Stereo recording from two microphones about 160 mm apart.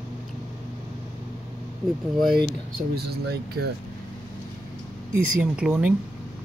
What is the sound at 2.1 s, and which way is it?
Speech, centre (ahead or behind).